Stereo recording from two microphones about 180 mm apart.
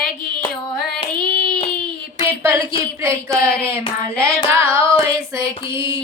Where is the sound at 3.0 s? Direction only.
15° right (ahead or behind).